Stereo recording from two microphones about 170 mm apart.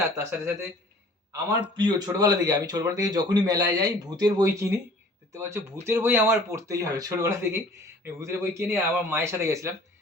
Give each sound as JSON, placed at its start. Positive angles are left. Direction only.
{"t": 0.0, "sound": "speech", "side_deg": -15}
{"t": 1.7, "sound": "speech", "side_deg": -25}